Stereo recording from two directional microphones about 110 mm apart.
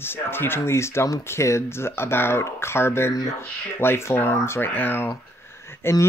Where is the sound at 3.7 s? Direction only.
20° left (ahead or behind).